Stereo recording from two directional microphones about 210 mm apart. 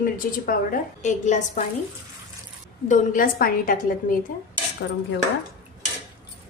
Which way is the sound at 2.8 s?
40° left (ahead or behind).